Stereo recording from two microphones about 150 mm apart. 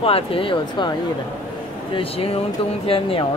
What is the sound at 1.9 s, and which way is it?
Speech, 40° left (ahead or behind).